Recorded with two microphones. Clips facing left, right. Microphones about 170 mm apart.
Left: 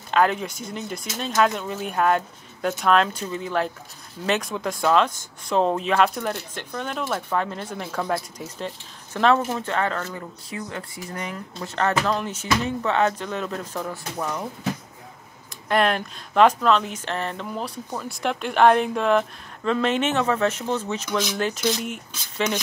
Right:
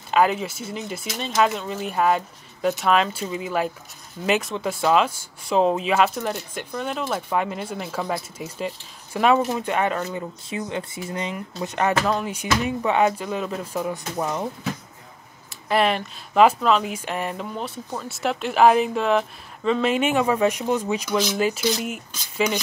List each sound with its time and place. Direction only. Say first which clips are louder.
0.1 s speech: right 1 dB; 5° right (ahead or behind)
14.1 s speech: right 2 dB; 20° right (ahead or behind)
15.5 s speech: even; centre (ahead or behind)
17.6 s speech: even; centre (ahead or behind)